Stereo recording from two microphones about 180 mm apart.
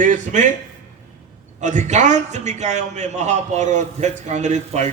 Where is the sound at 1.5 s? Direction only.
40° right (ahead or behind).